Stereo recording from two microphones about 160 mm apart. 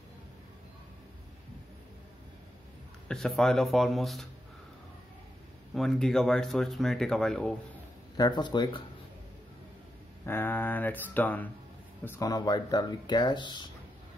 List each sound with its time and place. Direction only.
3.1 s speech: centre (ahead or behind)
5.8 s speech: 5° left (ahead or behind)
8.2 s speech: 30° left (ahead or behind)
10.2 s speech: 15° left (ahead or behind)
12.3 s speech: 25° left (ahead or behind)